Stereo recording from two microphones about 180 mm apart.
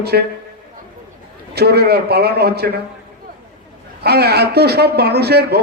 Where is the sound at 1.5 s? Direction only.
65° right (ahead or behind).